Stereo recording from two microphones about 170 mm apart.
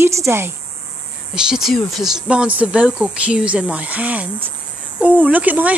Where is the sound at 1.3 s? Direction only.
5° right (ahead or behind).